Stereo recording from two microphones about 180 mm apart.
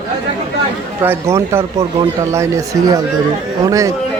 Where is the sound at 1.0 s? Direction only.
10° right (ahead or behind).